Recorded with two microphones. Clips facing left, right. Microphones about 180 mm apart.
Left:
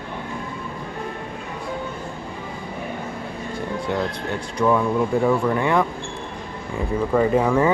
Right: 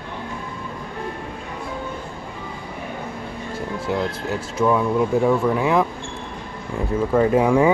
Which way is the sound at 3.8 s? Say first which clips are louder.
Right 2 dB; 5° right (ahead or behind).